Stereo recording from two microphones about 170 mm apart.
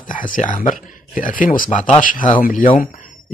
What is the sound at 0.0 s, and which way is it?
Speech, 50° left (ahead or behind).